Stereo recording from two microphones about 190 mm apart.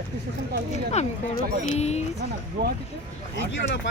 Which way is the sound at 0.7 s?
35° left (ahead or behind).